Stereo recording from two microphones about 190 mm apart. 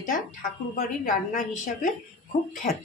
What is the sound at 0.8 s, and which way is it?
Speech, 45° left (ahead or behind).